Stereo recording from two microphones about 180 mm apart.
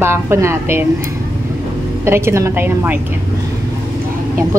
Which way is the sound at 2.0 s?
15° right (ahead or behind).